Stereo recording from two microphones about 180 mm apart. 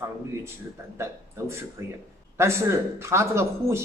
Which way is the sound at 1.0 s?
15° right (ahead or behind).